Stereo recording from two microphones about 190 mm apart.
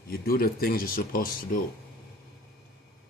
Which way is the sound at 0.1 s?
55° left (ahead or behind).